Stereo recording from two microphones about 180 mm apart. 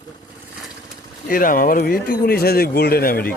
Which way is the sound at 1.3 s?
50° left (ahead or behind).